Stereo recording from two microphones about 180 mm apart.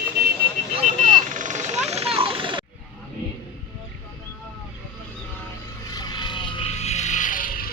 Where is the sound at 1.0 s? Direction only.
45° right (ahead or behind).